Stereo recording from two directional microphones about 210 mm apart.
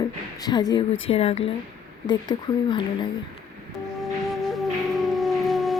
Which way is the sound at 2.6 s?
20° left (ahead or behind).